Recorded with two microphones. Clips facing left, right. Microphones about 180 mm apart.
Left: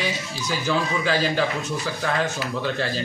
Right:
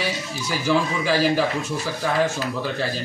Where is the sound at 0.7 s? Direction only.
5° right (ahead or behind).